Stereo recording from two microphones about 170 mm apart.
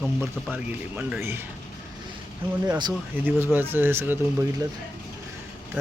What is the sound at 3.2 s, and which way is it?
Speech, 10° right (ahead or behind).